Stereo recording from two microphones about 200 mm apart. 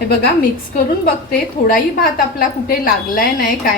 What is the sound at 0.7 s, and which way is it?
A woman's voice, 45° left (ahead or behind).